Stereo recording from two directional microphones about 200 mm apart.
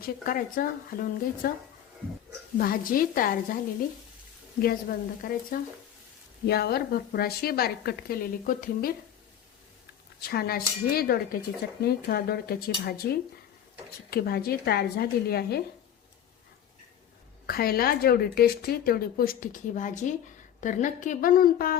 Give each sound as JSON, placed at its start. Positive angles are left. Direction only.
{"t": 0.0, "sound": "a woman's voice", "side_deg": 45}
{"t": 2.6, "sound": "a woman's voice", "side_deg": 45}
{"t": 4.6, "sound": "a woman's voice", "side_deg": 45}
{"t": 10.2, "sound": "a woman's voice", "side_deg": 50}
{"t": 17.4, "sound": "a woman's voice", "side_deg": 50}